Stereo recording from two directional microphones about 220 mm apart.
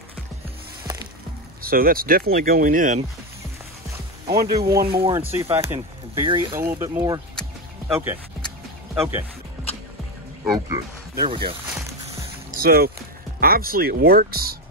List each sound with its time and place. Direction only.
1.6 s speech: 40° right (ahead or behind)
4.3 s speech: 45° right (ahead or behind)
4.6 s speech: 15° right (ahead or behind)
6.2 s speech: 20° right (ahead or behind)
6.5 s speech: 10° right (ahead or behind)
10.4 s speech: 15° right (ahead or behind)
11.6 s music: 15° right (ahead or behind)
12.4 s music: 40° right (ahead or behind)
13.4 s speech: 40° right (ahead or behind)